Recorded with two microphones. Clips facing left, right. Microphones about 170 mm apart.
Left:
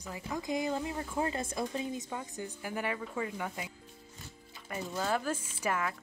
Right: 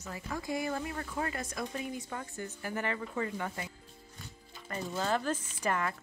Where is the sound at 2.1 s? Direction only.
15° left (ahead or behind).